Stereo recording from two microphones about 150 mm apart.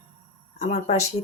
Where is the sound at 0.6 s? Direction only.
50° left (ahead or behind).